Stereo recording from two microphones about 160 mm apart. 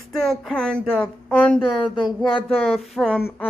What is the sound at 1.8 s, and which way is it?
Speech, 30° left (ahead or behind).